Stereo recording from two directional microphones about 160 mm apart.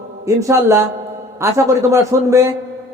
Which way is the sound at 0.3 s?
20° right (ahead or behind).